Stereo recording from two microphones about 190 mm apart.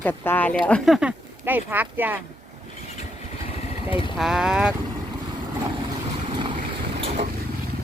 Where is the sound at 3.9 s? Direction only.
30° left (ahead or behind).